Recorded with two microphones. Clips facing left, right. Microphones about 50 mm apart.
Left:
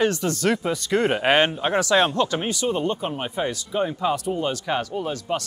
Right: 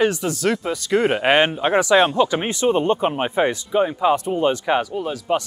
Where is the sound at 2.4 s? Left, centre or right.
Right.